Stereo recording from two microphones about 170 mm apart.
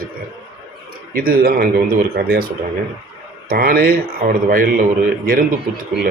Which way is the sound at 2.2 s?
70° right (ahead or behind).